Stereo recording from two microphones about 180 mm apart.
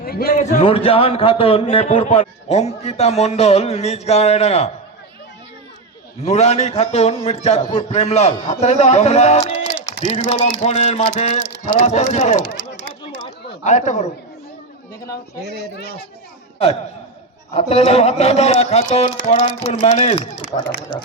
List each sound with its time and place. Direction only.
0.0 s a man's voice: 60° left (ahead or behind)
0.3 s a man's voice: 40° left (ahead or behind)
6.2 s a man's voice: 35° left (ahead or behind)
13.7 s a man's voice: 40° left (ahead or behind)
17.5 s a man's voice: 35° left (ahead or behind)